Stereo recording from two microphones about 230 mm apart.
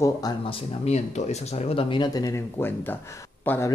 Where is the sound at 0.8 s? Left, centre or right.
Left.